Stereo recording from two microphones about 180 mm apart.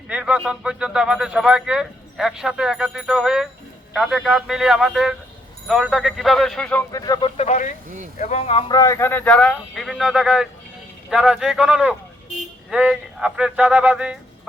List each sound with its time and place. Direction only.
0.1 s speech: 5° right (ahead or behind)
6.9 s speech: 20° left (ahead or behind)
8.7 s speech: 15° left (ahead or behind); by 14.2 s 5° right (ahead or behind)